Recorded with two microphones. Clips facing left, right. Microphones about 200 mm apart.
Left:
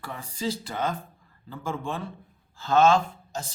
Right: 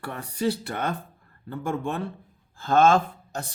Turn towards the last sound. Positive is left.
turn(degrees=-60)  # may be behind; listen again after turning